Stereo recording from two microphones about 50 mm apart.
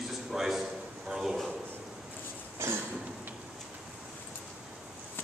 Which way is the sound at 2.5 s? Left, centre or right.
Right.